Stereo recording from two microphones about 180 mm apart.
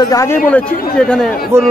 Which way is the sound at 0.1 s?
20° left (ahead or behind).